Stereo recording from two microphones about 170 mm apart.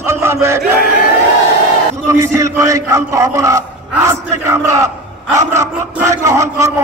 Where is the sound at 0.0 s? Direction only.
15° right (ahead or behind).